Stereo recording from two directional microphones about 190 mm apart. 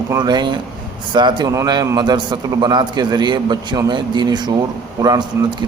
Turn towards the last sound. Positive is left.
turn(degrees=-20)  # may be behind; listen again after turning